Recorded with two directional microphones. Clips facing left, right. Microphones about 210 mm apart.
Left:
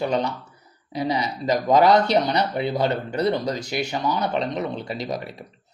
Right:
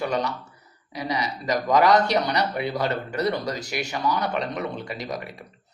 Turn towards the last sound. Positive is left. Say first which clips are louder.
# left 3 dB
turn(degrees=25)  # may be behind; listen again after turning